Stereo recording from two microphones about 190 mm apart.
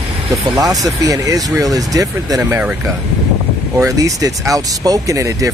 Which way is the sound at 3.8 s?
20° right (ahead or behind).